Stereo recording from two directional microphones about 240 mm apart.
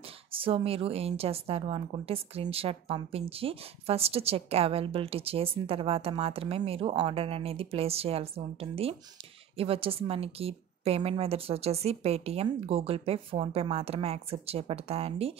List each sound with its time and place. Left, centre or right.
0.3 s a woman's voice: right